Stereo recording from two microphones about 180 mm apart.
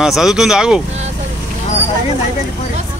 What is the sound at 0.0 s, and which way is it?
Speech, centre (ahead or behind).